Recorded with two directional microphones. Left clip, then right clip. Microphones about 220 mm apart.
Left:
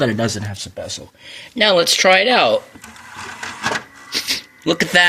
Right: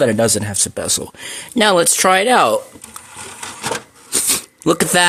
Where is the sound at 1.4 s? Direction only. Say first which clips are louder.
Right 1 dB; 35° right (ahead or behind).